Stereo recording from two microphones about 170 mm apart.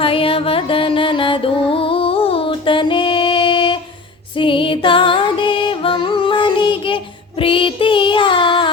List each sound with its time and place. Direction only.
0.0 s music: 35° left (ahead or behind)